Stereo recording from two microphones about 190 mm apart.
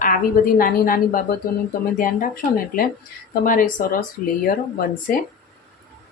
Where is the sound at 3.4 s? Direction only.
45° left (ahead or behind).